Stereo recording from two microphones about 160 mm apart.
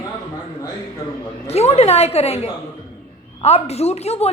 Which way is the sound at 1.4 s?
40° left (ahead or behind).